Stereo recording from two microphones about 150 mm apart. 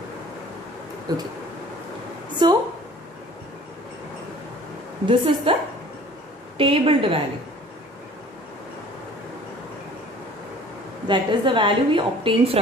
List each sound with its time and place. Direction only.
1.1 s speech: 25° right (ahead or behind)
2.4 s a woman's voice: 30° right (ahead or behind)
5.0 s a woman's voice: 40° right (ahead or behind)
6.6 s a woman's voice: 40° right (ahead or behind)
11.1 s a woman's voice: 35° right (ahead or behind)